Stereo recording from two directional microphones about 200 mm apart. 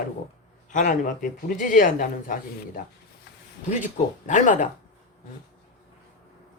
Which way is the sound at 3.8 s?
40° left (ahead or behind).